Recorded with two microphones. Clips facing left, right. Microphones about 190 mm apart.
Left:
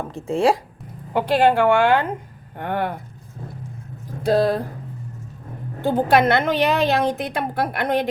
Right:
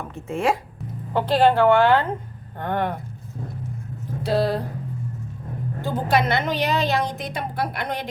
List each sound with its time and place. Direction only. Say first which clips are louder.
0.0 s speech: left 5 dB; 30° left (ahead or behind)
1.1 s speech: left 1 dB; 15° left (ahead or behind)
4.2 s speech: left 4 dB; 50° left (ahead or behind)
5.8 s a woman's voice: left 5 dB; 55° left (ahead or behind)